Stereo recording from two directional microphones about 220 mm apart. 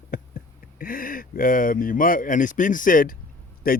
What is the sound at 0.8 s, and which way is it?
Speech, 40° left (ahead or behind).